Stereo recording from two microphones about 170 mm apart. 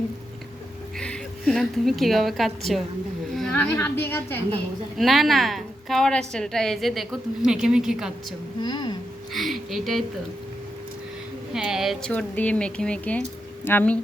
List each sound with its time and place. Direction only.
0.9 s a woman's voice: 5° left (ahead or behind)
4.9 s a woman's voice: centre (ahead or behind)
8.6 s speech: 25° left (ahead or behind)
9.3 s a sound: centre (ahead or behind)
11.5 s a woman's voice: 5° right (ahead or behind)